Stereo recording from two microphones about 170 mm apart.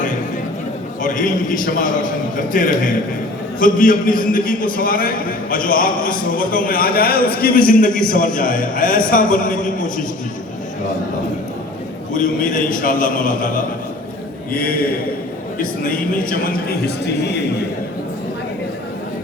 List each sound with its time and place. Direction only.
1.0 s a man's voice: 50° left (ahead or behind)
12.1 s a man's voice: 50° left (ahead or behind); by 17.4 s 75° left (ahead or behind)